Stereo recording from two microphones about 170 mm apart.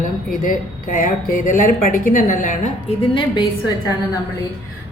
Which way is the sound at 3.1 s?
25° left (ahead or behind).